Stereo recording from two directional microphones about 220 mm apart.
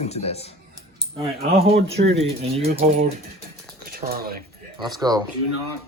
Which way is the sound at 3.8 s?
45° right (ahead or behind).